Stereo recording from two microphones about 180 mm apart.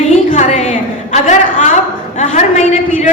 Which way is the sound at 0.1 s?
40° left (ahead or behind).